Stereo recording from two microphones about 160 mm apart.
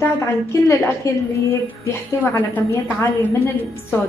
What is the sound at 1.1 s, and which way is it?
Speech, 20° left (ahead or behind).